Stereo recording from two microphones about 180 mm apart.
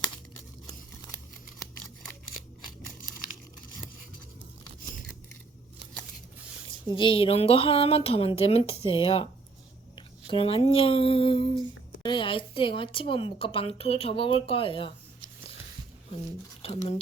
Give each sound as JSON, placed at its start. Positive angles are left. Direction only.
{"t": 6.8, "sound": "a woman's voice", "side_deg": 30}
{"t": 9.9, "sound": "a sound", "side_deg": 30}
{"t": 12.0, "sound": "speech", "side_deg": 25}
{"t": 16.6, "sound": "speech", "side_deg": 30}